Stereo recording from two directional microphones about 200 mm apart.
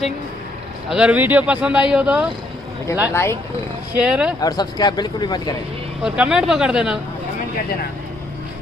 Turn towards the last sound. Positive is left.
turn(degrees=-5)  # may be behind; listen again after turning